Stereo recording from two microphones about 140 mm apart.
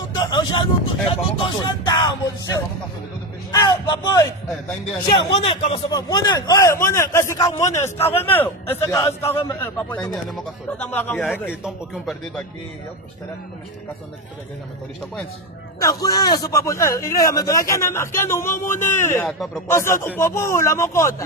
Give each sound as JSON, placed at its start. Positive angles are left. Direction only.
{"t": 0.1, "sound": "a sound", "side_deg": 30}
{"t": 1.4, "sound": "speech", "side_deg": 30}
{"t": 5.1, "sound": "speech", "side_deg": 40}
{"t": 5.9, "sound": "a man's voice", "side_deg": 25}
{"t": 11.6, "sound": "speech", "side_deg": -5}
{"t": 15.8, "sound": "speech", "side_deg": 25}
{"t": 19.2, "sound": "speech", "side_deg": 0}
{"t": 19.7, "sound": "speech", "side_deg": 20}